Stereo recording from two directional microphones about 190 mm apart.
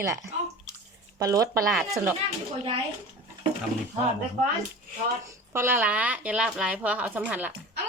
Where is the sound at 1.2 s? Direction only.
15° right (ahead or behind).